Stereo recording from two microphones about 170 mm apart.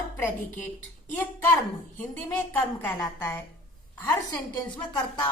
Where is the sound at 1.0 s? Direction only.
10° left (ahead or behind).